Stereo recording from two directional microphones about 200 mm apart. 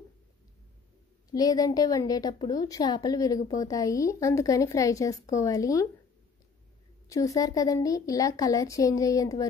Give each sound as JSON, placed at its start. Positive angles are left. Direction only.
{"t": 1.3, "sound": "a woman's voice", "side_deg": 20}
{"t": 7.1, "sound": "a woman's voice", "side_deg": 15}